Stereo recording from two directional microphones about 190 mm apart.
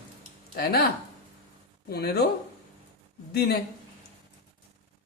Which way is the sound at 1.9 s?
55° left (ahead or behind).